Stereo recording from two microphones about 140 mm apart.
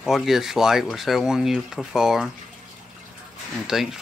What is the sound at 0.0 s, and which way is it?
Speech, centre (ahead or behind).